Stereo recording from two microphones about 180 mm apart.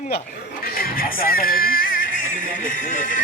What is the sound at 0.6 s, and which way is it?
Music, 55° left (ahead or behind).